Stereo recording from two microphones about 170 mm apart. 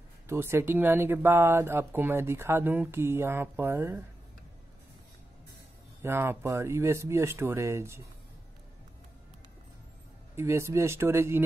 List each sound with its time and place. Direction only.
0.3 s speech: 15° right (ahead or behind)
6.0 s speech: 15° right (ahead or behind)
10.3 s speech: 15° right (ahead or behind)